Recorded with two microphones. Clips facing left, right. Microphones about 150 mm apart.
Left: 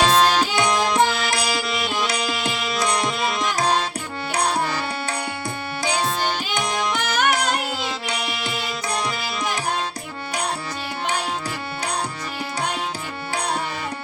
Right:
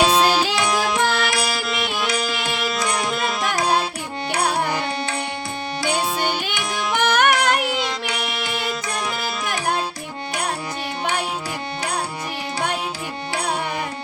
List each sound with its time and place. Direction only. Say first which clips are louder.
0.0 s music: right 1 dB; 10° right (ahead or behind)
4.4 s music: right 1 dB; 15° right (ahead or behind)
6.9 s music: right 7 dB; 60° right (ahead or behind)
8.2 s music: right 2 dB; centre (ahead or behind)